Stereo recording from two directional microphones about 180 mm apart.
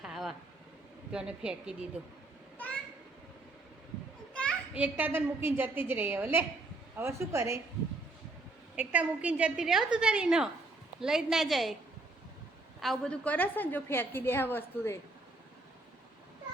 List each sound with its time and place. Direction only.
0.0 s vehicle: centre (ahead or behind)
1.1 s a woman's voice: 5° right (ahead or behind)
4.7 s a woman's voice: 10° right (ahead or behind)
8.7 s a woman's voice: 10° right (ahead or behind)
12.8 s a woman's voice: 5° left (ahead or behind)